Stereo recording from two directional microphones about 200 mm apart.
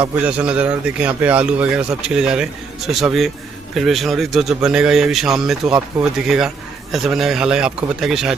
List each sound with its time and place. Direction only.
0.3 s a man's voice: 5° right (ahead or behind)